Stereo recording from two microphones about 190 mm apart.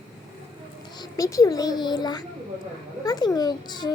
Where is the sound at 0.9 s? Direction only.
20° left (ahead or behind).